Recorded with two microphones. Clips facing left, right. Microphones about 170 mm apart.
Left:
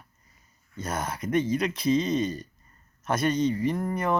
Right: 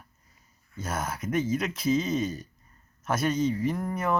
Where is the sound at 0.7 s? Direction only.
5° right (ahead or behind).